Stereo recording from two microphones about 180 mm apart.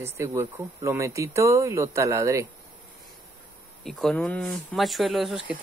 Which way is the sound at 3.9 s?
Centre (ahead or behind).